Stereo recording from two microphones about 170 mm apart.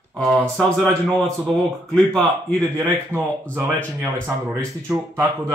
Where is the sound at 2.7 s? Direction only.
15° right (ahead or behind).